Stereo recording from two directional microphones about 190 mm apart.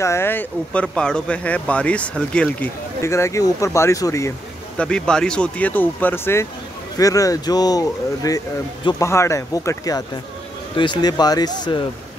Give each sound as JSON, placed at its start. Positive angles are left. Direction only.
{"t": 0.0, "sound": "speech", "side_deg": 15}
{"t": 4.7, "sound": "speech", "side_deg": 5}